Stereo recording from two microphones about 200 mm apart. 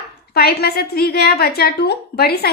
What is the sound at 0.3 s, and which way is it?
A woman's voice, 50° left (ahead or behind).